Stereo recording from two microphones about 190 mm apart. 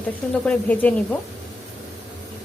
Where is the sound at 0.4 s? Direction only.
5° left (ahead or behind).